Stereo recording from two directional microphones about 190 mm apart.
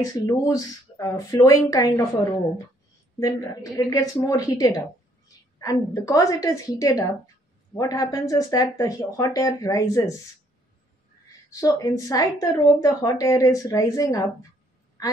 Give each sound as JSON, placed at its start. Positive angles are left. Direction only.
{"t": 0.0, "sound": "speech", "side_deg": 15}
{"t": 3.2, "sound": "speech", "side_deg": 20}
{"t": 11.6, "sound": "speech", "side_deg": 20}
{"t": 15.0, "sound": "a sound", "side_deg": 20}